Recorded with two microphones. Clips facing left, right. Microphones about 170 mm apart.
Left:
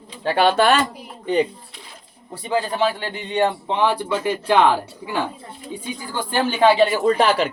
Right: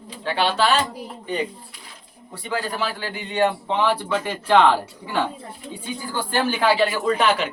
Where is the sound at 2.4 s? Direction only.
20° left (ahead or behind).